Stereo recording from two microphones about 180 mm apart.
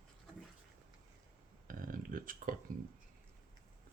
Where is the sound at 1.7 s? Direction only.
50° right (ahead or behind).